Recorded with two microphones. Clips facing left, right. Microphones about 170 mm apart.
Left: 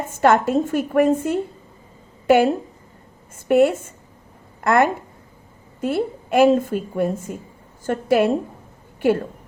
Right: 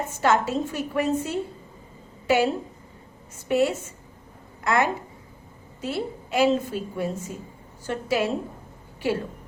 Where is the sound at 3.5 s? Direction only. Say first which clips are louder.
Left 7 dB; 55° left (ahead or behind).